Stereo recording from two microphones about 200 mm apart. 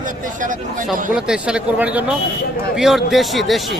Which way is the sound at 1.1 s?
5° right (ahead or behind).